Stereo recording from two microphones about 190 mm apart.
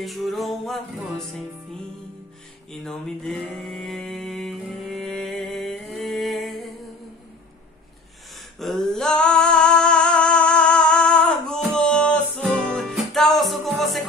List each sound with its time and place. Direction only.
0.0 s music: centre (ahead or behind)
2.7 s a sound: centre (ahead or behind)
8.5 s singing: centre (ahead or behind)
12.7 s music: centre (ahead or behind)